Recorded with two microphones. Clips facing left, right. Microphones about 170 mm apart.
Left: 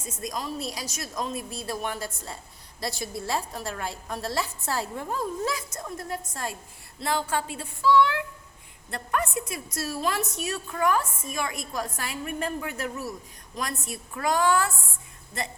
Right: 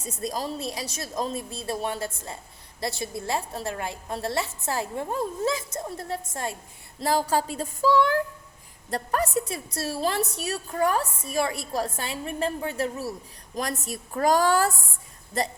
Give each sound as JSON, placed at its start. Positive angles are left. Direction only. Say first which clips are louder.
{"t": 0.2, "sound": "a woman's voice", "louder": "right 2 dB", "side_deg": -35}
{"t": 7.0, "sound": "a woman's voice", "louder": "right 4 dB", "side_deg": -35}